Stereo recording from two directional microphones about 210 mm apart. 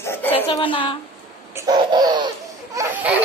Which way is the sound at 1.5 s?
20° right (ahead or behind).